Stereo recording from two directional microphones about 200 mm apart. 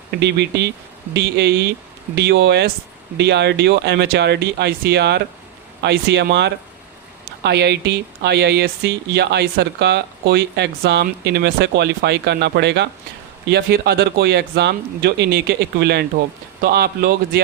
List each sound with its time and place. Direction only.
0.2 s a man's voice: 60° right (ahead or behind)